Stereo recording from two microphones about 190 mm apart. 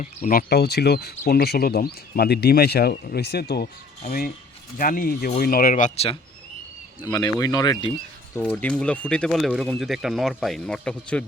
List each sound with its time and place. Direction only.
0.0 s speech: 45° left (ahead or behind)
7.0 s speech: 20° left (ahead or behind)
8.4 s speech: 5° left (ahead or behind)